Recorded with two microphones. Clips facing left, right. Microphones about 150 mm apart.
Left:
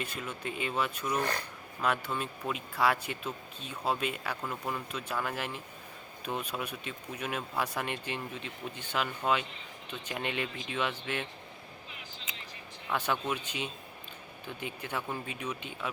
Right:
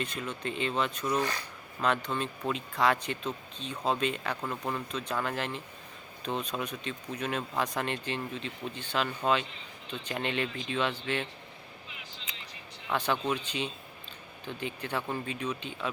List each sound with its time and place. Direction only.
0.0 s speech: 10° left (ahead or behind)
1.2 s speech: 55° left (ahead or behind)
1.8 s speech: 10° left (ahead or behind)
12.9 s speech: 10° left (ahead or behind)